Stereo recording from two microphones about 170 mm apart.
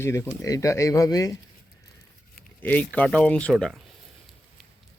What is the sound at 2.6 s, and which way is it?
Speech, 10° left (ahead or behind).